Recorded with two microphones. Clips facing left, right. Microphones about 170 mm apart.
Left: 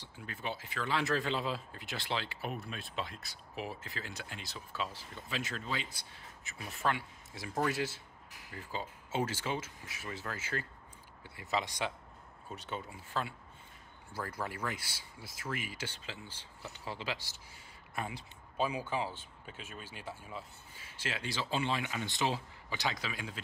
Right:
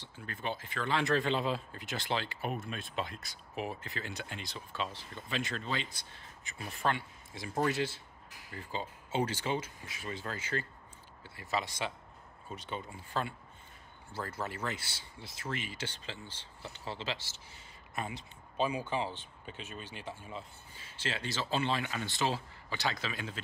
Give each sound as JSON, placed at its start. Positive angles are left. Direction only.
{"t": 0.0, "sound": "speech", "side_deg": 5}
{"t": 11.2, "sound": "speech", "side_deg": 20}